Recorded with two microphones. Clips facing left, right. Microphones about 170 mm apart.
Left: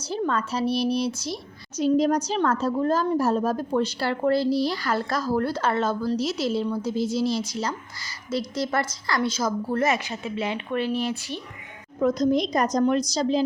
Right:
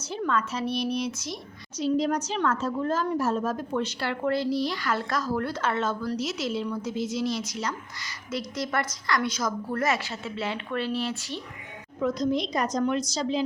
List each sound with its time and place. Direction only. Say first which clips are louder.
0.0 s a woman's voice: left 2 dB; 35° left (ahead or behind)
1.7 s a woman's voice: left 4 dB; 45° left (ahead or behind); by 11.3 s 15° left (ahead or behind)
11.9 s a woman's voice: left 5 dB; 45° left (ahead or behind)